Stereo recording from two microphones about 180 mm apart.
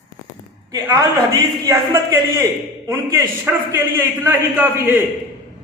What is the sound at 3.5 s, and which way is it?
A man's voice, 15° right (ahead or behind).